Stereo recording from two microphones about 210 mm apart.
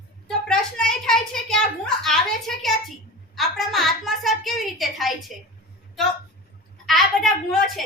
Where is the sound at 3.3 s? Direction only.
Centre (ahead or behind).